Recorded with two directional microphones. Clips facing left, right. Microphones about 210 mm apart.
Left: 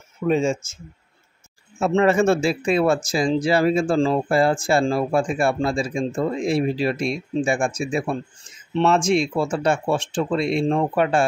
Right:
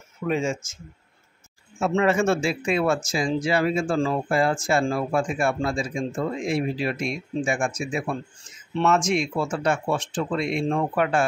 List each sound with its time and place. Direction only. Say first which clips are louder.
0.2 s speech: left 5 dB; 25° left (ahead or behind)
1.8 s speech: left 4 dB; 35° left (ahead or behind)